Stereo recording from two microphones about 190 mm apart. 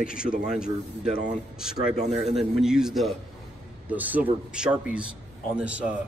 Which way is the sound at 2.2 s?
Centre (ahead or behind).